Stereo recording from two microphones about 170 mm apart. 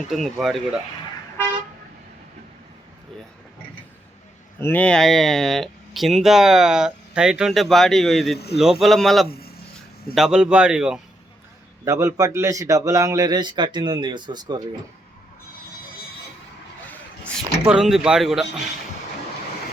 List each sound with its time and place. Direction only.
0.1 s speech: centre (ahead or behind)
4.6 s speech: 10° left (ahead or behind)
11.9 s a man's voice: 20° right (ahead or behind)
17.7 s speech: 5° right (ahead or behind)